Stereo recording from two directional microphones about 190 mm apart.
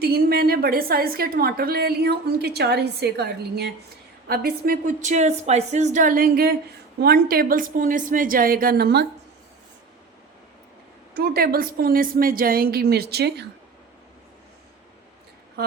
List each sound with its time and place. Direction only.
0.0 s a woman's voice: 55° right (ahead or behind)
11.1 s a woman's voice: 55° right (ahead or behind)